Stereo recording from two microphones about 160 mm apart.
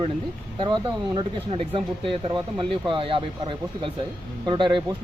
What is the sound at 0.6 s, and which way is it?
Speech, 25° right (ahead or behind).